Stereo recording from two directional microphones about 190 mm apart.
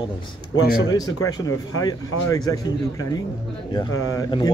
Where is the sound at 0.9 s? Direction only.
20° left (ahead or behind).